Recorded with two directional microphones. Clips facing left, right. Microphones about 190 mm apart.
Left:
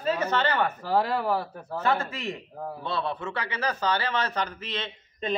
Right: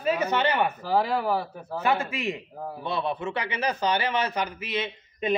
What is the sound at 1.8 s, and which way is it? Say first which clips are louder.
Speech: right 1 dB; 10° right (ahead or behind).